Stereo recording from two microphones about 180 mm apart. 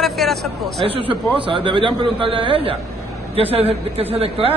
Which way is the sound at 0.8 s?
30° right (ahead or behind).